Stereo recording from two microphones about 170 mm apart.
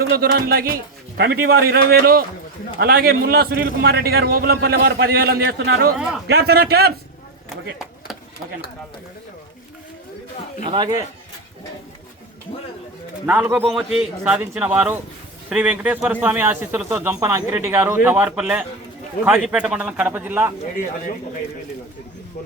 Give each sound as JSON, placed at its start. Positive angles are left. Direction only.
{"t": 0.2, "sound": "a man's voice", "side_deg": -65}
{"t": 6.2, "sound": "a man's voice", "side_deg": -70}
{"t": 10.7, "sound": "speech", "side_deg": -25}
{"t": 13.2, "sound": "speech", "side_deg": -10}